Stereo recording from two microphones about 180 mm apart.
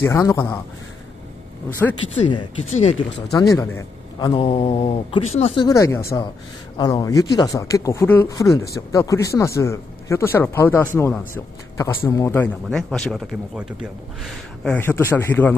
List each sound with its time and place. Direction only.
0.0 s speech: 15° left (ahead or behind)
2.7 s a man's voice: 35° left (ahead or behind)
3.3 s a man's voice: 15° left (ahead or behind); by 5.7 s 35° left (ahead or behind)
5.7 s speech: 15° left (ahead or behind)
12.6 s speech: 5° left (ahead or behind)